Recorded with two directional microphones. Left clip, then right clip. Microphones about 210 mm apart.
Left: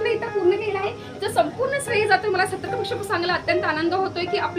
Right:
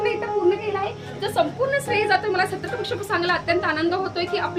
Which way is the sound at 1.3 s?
20° right (ahead or behind).